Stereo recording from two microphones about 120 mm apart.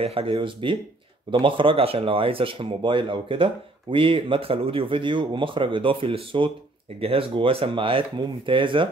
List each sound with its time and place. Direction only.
0.0 s speech: 50° right (ahead or behind)